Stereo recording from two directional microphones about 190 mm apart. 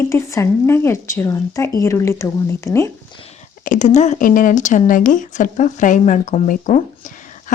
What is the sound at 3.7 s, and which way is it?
A woman's voice, 40° left (ahead or behind).